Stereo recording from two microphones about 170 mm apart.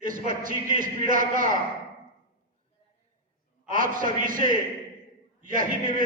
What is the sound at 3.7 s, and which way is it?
A man's voice, 50° right (ahead or behind).